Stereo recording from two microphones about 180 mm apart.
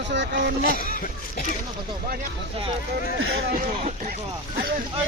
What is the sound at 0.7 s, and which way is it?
Speech, 50° left (ahead or behind).